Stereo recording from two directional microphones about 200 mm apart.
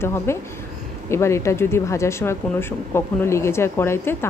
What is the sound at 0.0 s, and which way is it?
A woman's voice, 10° left (ahead or behind).